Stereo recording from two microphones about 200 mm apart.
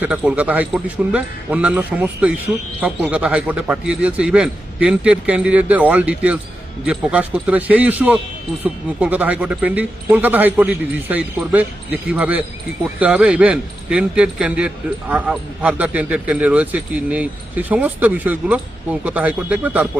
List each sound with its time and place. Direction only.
0.0 s a man's voice: 5° right (ahead or behind)